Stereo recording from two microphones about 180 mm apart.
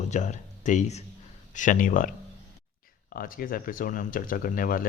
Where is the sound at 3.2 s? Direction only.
50° left (ahead or behind).